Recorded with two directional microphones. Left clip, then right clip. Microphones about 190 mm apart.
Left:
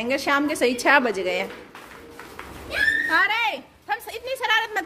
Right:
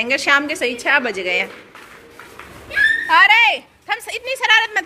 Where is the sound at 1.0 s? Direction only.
10° left (ahead or behind).